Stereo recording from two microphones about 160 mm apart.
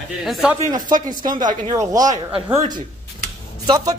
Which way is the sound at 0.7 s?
25° right (ahead or behind).